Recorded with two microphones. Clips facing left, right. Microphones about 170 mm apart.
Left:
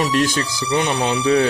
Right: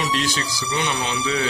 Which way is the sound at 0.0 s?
50° left (ahead or behind).